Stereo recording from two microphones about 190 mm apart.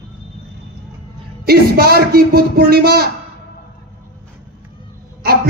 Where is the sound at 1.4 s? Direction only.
55° right (ahead or behind).